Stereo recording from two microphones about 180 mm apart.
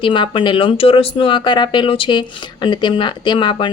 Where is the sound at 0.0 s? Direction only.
25° left (ahead or behind).